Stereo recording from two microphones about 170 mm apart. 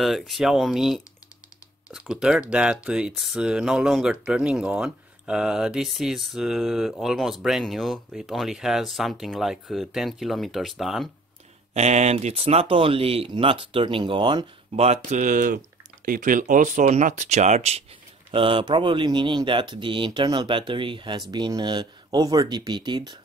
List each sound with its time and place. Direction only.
0.0 s speech: centre (ahead or behind)
11.7 s speech: 40° right (ahead or behind); by 23.1 s 25° right (ahead or behind)